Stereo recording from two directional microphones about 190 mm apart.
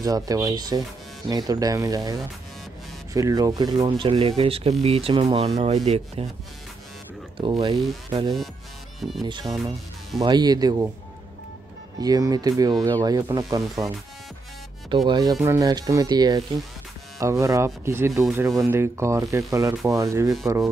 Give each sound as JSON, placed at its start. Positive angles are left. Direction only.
{"t": 0.0, "sound": "speech", "side_deg": -20}
{"t": 7.3, "sound": "speech", "side_deg": -30}
{"t": 12.0, "sound": "speech", "side_deg": -20}
{"t": 15.0, "sound": "speech", "side_deg": -20}